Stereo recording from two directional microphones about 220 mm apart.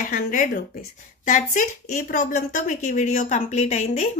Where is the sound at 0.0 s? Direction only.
35° left (ahead or behind).